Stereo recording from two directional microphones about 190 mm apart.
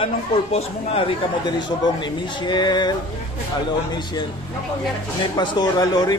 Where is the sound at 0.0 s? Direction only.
30° left (ahead or behind).